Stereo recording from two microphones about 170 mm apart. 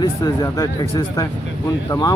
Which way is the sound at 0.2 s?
25° left (ahead or behind).